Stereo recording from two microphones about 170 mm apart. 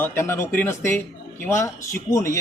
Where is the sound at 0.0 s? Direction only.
15° left (ahead or behind).